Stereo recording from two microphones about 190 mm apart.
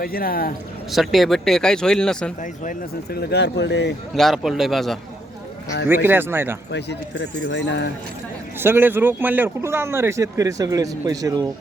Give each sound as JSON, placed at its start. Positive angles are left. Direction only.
{"t": 0.0, "sound": "speech", "side_deg": 50}
{"t": 0.9, "sound": "speech", "side_deg": 0}
{"t": 2.4, "sound": "speech", "side_deg": 50}
{"t": 4.1, "sound": "speech", "side_deg": 0}
{"t": 5.9, "sound": "speech", "side_deg": -10}
{"t": 6.7, "sound": "speech", "side_deg": 65}
{"t": 8.5, "sound": "speech", "side_deg": -10}